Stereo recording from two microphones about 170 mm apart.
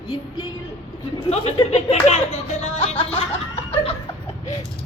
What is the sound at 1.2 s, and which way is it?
Speech, 35° left (ahead or behind).